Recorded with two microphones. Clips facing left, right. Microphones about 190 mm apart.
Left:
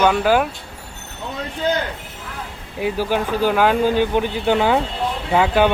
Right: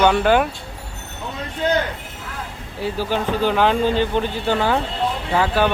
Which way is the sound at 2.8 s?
10° left (ahead or behind).